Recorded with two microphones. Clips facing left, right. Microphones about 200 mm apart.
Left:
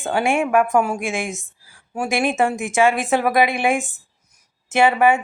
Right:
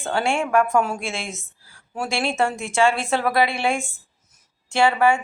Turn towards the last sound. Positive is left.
turn(degrees=20)  # may be behind; listen again after turning